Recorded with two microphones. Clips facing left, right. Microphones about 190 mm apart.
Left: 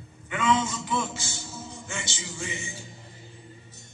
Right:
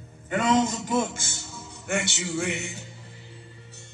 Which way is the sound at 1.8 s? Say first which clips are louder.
Right 13 dB; 65° right (ahead or behind).